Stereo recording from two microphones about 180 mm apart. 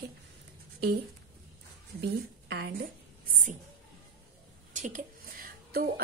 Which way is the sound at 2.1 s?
65° right (ahead or behind).